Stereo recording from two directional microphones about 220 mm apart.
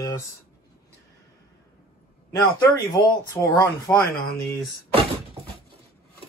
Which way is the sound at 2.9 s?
20° left (ahead or behind).